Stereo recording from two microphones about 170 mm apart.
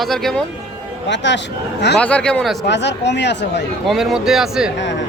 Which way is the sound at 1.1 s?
90° left.